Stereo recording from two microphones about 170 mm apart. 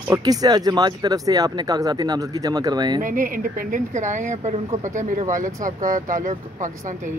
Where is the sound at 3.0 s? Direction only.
50° right (ahead or behind).